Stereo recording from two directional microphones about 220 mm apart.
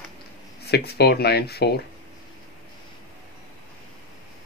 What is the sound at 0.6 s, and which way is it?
Speech, 45° left (ahead or behind).